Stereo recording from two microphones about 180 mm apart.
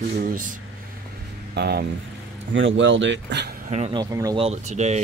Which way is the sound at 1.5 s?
65° right (ahead or behind).